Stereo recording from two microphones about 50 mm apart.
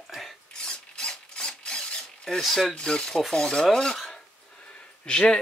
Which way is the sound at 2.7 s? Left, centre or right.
Centre.